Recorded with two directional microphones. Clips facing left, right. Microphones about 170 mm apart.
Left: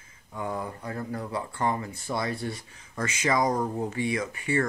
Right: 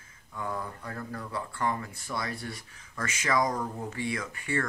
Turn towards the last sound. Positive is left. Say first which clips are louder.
# left 5 dB
turn(degrees=20)  # may be behind; listen again after turning